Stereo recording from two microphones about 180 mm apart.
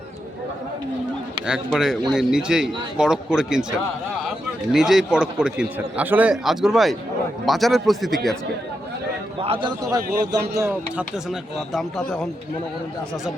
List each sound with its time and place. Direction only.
1.5 s a man's voice: 5° right (ahead or behind)
9.4 s a man's voice: 30° right (ahead or behind)
10.0 s speech: 65° right (ahead or behind)
10.6 s a man's voice: 10° right (ahead or behind)